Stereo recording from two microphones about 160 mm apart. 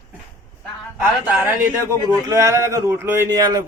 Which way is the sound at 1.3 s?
10° right (ahead or behind).